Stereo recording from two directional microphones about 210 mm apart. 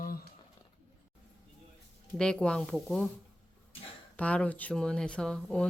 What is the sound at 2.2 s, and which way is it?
Speech, 5° left (ahead or behind).